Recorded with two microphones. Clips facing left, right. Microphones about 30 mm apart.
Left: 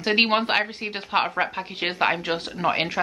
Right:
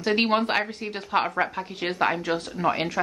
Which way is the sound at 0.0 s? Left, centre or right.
Left.